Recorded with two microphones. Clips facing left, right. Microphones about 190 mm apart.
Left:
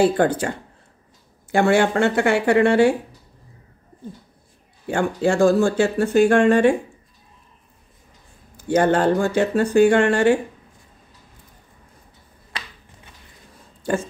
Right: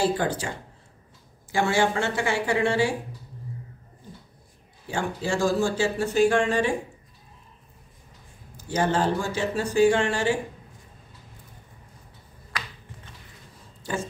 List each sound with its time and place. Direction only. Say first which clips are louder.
0.0 s speech: left 7 dB; 55° left (ahead or behind)
4.8 s speech: left 8 dB; 60° left (ahead or behind)
8.5 s speech: left 7 dB; 60° left (ahead or behind)